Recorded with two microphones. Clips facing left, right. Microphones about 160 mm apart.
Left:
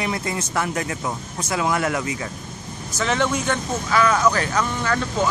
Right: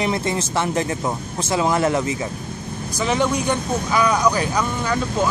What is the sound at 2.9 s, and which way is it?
Speech, 15° right (ahead or behind).